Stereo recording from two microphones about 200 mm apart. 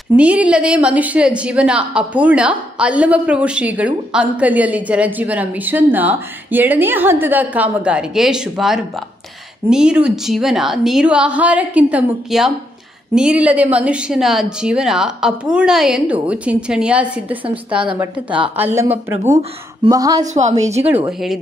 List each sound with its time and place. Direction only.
0.1 s a woman's voice: 5° right (ahead or behind)
20.3 s a woman's voice: 35° right (ahead or behind)
20.7 s a woman's voice: 10° right (ahead or behind)